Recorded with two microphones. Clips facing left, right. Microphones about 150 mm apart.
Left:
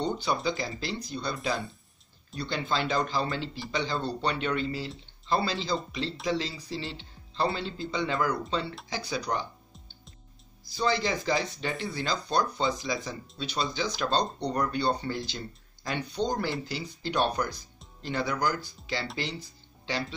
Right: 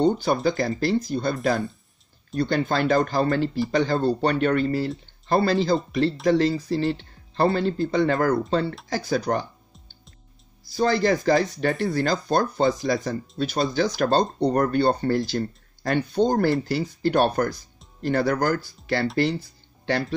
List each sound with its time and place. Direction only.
0.0 s speech: 50° right (ahead or behind)
10.7 s speech: 50° right (ahead or behind)